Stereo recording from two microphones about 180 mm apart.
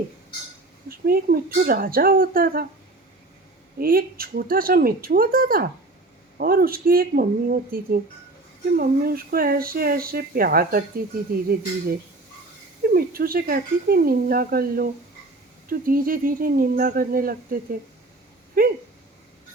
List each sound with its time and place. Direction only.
0.9 s speech: 55° right (ahead or behind)
3.8 s speech: 55° right (ahead or behind)
12.8 s speech: 55° right (ahead or behind)
18.6 s a sound: 50° right (ahead or behind)